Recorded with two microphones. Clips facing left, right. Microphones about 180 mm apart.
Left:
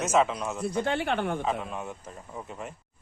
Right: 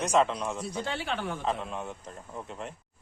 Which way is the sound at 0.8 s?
55° left (ahead or behind).